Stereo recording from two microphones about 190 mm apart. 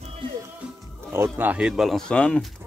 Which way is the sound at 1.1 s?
10° right (ahead or behind).